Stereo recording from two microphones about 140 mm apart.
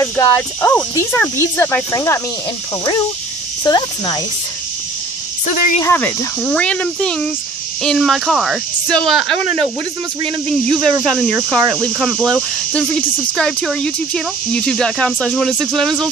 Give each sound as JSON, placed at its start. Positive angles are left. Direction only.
{"t": 0.0, "sound": "speech", "side_deg": 15}
{"t": 3.6, "sound": "speech", "side_deg": 30}
{"t": 5.8, "sound": "speech", "side_deg": 15}
{"t": 10.5, "sound": "speech", "side_deg": 5}